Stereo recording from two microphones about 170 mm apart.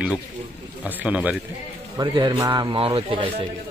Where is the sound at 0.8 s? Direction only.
10° right (ahead or behind).